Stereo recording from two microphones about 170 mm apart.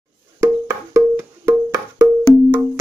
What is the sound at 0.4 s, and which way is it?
Wood block, 15° right (ahead or behind).